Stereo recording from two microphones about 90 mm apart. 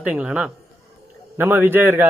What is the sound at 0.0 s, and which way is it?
Speech, 15° right (ahead or behind).